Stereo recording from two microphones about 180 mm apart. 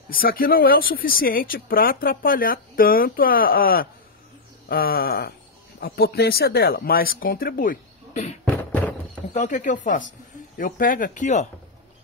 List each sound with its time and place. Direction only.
0.1 s speech: 55° left (ahead or behind)